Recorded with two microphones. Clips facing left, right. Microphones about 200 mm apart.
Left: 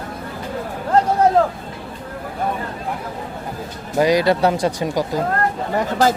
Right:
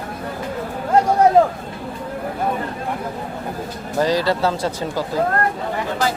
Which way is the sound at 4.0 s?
15° left (ahead or behind).